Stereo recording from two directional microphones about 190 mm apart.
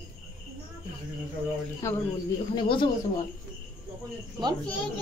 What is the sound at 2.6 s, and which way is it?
Speech, 25° left (ahead or behind).